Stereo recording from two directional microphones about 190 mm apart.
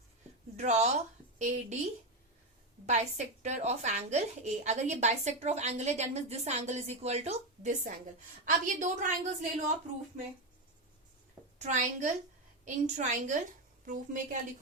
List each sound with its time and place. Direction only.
0.5 s speech: 35° right (ahead or behind)
11.6 s a woman's voice: 40° right (ahead or behind)